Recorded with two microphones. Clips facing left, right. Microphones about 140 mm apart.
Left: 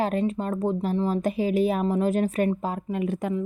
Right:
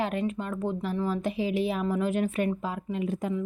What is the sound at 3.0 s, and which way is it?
Speech, 65° left (ahead or behind).